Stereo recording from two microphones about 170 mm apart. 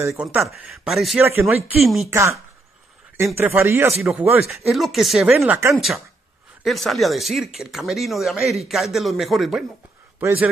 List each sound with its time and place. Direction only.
0.1 s speech: 5° right (ahead or behind)
2.0 s speech: 15° right (ahead or behind)
3.3 s speech: 15° right (ahead or behind)
4.5 s speech: centre (ahead or behind)